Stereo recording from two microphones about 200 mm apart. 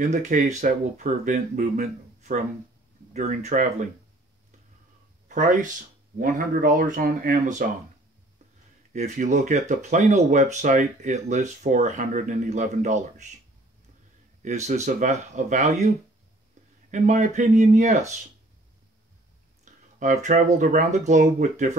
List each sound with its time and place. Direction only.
0.0 s speech: 35° right (ahead or behind)
5.3 s speech: 40° right (ahead or behind)
8.9 s speech: 40° right (ahead or behind)
14.4 s speech: 35° right (ahead or behind)
16.9 s speech: 35° right (ahead or behind)
19.6 s a sound: 35° right (ahead or behind)
20.5 s speech: 40° right (ahead or behind)